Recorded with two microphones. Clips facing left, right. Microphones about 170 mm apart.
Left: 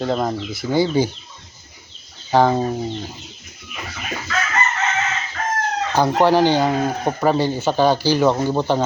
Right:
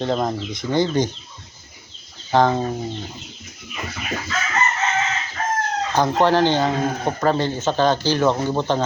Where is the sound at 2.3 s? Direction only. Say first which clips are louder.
Left 2 dB; 10° left (ahead or behind).